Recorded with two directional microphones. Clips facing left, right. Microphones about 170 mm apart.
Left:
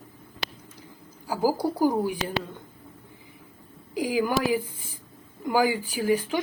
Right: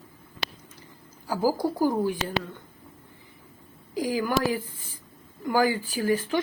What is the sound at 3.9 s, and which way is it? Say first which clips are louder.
A woman's voice: left 1 dB; 15° left (ahead or behind).